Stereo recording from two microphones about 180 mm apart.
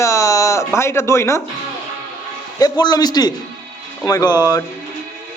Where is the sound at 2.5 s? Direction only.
20° left (ahead or behind).